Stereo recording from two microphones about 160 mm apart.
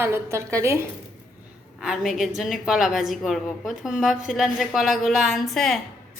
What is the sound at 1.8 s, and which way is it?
A woman's voice, centre (ahead or behind).